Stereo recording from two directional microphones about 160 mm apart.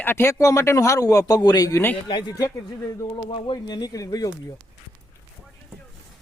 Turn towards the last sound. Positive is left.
turn(degrees=20)  # may be behind; listen again after turning